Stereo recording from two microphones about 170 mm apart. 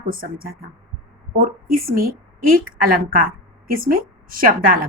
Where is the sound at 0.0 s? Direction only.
55° right (ahead or behind).